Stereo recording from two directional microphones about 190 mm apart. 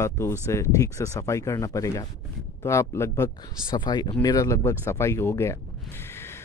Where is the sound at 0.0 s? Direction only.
15° left (ahead or behind).